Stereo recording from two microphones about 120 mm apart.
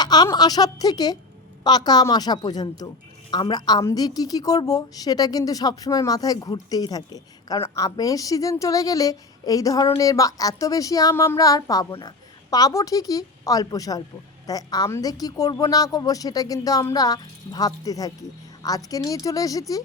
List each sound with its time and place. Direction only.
0.0 s a woman's voice: 35° left (ahead or behind)